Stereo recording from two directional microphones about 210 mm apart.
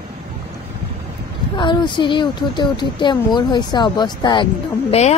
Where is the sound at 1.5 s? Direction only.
20° left (ahead or behind).